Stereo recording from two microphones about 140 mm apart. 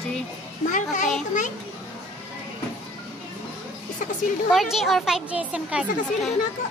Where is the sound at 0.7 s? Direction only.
60° left (ahead or behind).